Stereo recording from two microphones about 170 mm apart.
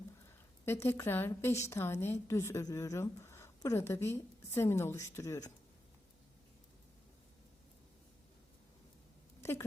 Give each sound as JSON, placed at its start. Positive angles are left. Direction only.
{"t": 0.6, "sound": "speech", "side_deg": 15}
{"t": 9.4, "sound": "speech", "side_deg": 15}